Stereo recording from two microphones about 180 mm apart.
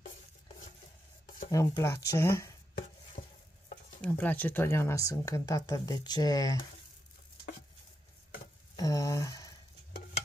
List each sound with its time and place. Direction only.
1.5 s speech: 15° left (ahead or behind)
4.0 s speech: 10° left (ahead or behind)
8.7 s a sound: 20° left (ahead or behind)